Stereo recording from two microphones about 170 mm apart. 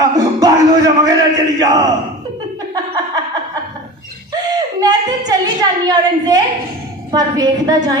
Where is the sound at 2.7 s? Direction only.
25° right (ahead or behind).